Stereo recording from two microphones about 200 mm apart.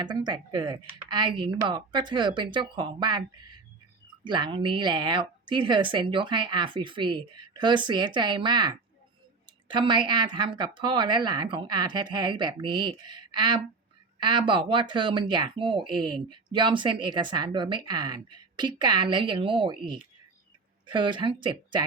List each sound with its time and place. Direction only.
0.0 s speech: 20° right (ahead or behind)